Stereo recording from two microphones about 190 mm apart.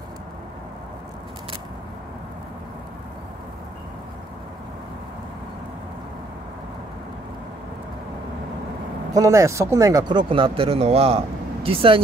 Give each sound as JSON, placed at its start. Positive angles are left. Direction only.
{"t": 9.1, "sound": "speech", "side_deg": -15}